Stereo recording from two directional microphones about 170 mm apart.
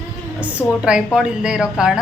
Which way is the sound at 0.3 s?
10° right (ahead or behind).